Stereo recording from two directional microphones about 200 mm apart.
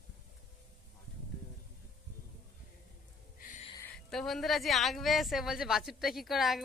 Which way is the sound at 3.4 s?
40° left (ahead or behind).